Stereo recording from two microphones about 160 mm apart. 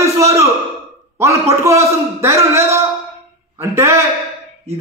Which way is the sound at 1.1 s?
15° right (ahead or behind).